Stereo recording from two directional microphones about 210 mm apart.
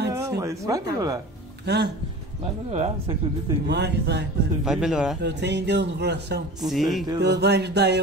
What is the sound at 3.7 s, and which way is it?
Speech, 55° right (ahead or behind).